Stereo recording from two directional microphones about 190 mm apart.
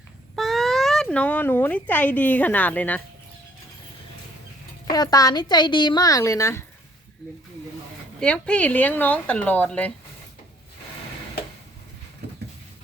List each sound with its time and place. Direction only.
0.3 s speech: centre (ahead or behind)
4.9 s a woman's voice: 20° left (ahead or behind)
8.2 s speech: 5° left (ahead or behind)